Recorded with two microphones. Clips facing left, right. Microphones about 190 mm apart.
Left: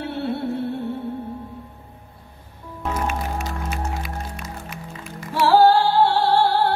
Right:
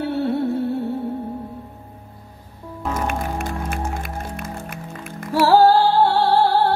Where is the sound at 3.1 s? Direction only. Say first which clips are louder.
Right 2 dB; 55° right (ahead or behind).